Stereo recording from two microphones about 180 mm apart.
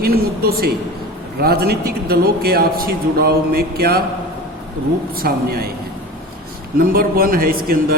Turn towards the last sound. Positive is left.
turn(degrees=-55)  # may be behind; listen again after turning